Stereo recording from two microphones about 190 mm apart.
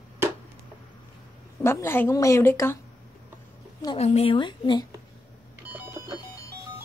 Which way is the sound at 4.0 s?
35° left (ahead or behind).